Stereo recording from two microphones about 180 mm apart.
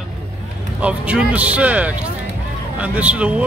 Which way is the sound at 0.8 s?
5° right (ahead or behind).